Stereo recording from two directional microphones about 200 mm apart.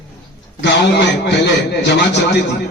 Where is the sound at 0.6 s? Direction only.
60° left (ahead or behind).